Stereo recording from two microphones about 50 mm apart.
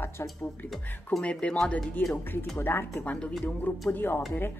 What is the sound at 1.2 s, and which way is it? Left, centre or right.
Speech, left.